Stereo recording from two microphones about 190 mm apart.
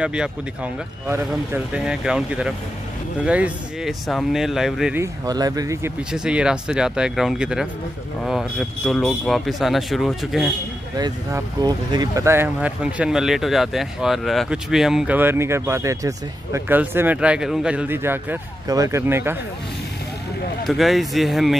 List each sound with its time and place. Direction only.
0.0 s speech: 5° right (ahead or behind)
4.9 s speech: 15° right (ahead or behind)
6.1 s speech: 5° right (ahead or behind)
11.0 s speech: 20° right (ahead or behind)
20.6 s speech: centre (ahead or behind)